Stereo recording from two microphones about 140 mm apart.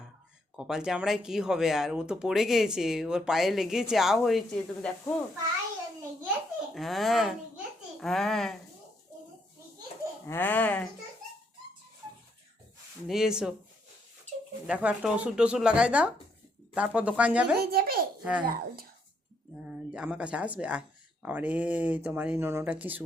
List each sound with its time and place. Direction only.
0.5 s speech: 5° right (ahead or behind)
6.7 s a child's voice: centre (ahead or behind)
10.2 s speech: 15° left (ahead or behind)
13.1 s speech: 5° right (ahead or behind)
14.7 s speech: 10° right (ahead or behind)
17.7 s speech: 90° right
18.2 s a child's voice: 10° right (ahead or behind)
18.4 s speech: 90° right
19.6 s speech: 5° right (ahead or behind)